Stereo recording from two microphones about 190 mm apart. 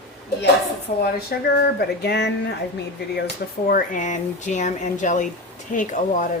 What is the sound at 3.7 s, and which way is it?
Speech, 45° left (ahead or behind).